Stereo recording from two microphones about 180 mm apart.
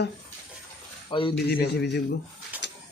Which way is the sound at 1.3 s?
65° left (ahead or behind).